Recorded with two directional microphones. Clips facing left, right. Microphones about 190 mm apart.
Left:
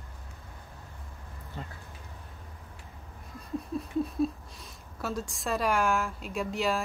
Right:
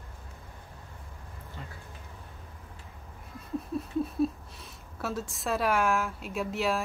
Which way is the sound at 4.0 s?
5° right (ahead or behind).